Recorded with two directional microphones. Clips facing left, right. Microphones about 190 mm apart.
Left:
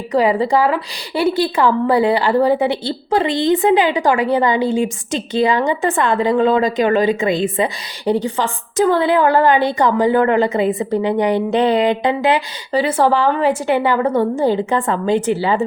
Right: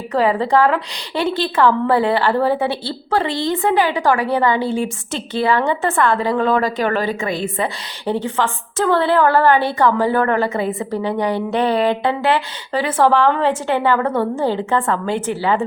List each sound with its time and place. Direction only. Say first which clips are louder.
0.1 s a woman's voice: left 1 dB; 15° left (ahead or behind)